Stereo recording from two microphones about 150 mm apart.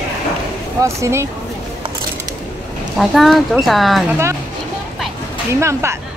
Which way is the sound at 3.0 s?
Centre (ahead or behind).